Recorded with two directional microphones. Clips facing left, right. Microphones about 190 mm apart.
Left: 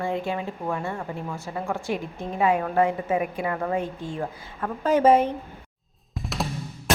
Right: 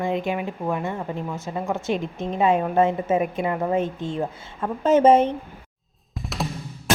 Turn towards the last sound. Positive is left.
turn(degrees=0)  # may be behind; listen again after turning